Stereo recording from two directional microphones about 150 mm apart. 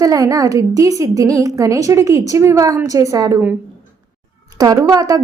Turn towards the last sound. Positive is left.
turn(degrees=-20)  # may be behind; listen again after turning